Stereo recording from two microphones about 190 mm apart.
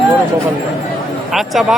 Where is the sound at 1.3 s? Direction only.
Centre (ahead or behind).